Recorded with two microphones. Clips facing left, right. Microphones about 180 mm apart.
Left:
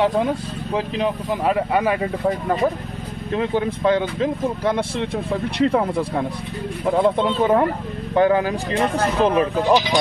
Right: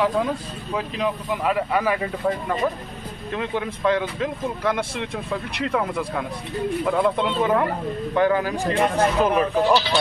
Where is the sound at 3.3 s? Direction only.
30° left (ahead or behind).